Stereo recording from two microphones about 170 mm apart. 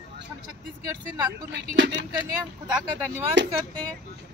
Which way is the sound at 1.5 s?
90° right.